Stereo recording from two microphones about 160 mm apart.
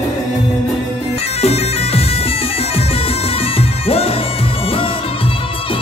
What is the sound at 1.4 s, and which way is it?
Bagpipes, 40° left (ahead or behind).